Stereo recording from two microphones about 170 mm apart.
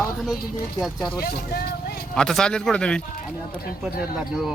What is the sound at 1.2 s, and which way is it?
Vehicle, 65° left (ahead or behind).